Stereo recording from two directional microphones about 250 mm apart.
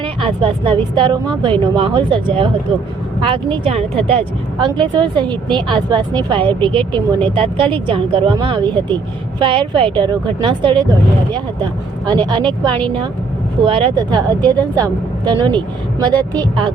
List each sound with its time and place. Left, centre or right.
0.0 s a woman's voice: centre